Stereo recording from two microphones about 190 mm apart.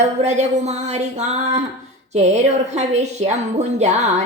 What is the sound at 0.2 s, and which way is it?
Speech, 35° right (ahead or behind).